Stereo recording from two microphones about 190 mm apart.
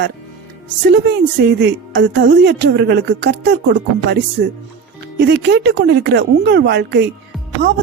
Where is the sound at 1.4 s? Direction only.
65° right (ahead or behind).